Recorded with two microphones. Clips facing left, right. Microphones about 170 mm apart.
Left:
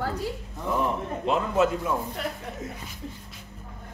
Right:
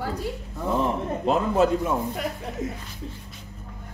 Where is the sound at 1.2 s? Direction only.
35° right (ahead or behind).